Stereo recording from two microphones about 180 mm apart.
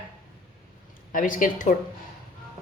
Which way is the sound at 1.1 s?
50° left (ahead or behind).